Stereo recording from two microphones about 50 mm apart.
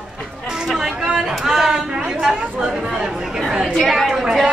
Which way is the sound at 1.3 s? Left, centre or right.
Centre.